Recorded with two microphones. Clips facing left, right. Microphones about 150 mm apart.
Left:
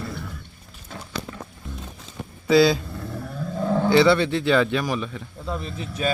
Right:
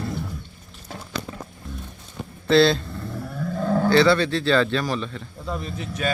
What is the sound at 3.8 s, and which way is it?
Speech, 15° left (ahead or behind).